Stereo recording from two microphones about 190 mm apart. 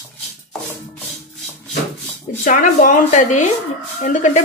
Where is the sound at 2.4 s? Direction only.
45° left (ahead or behind).